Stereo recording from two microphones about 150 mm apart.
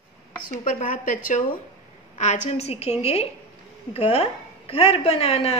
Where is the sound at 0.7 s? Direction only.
60° left (ahead or behind).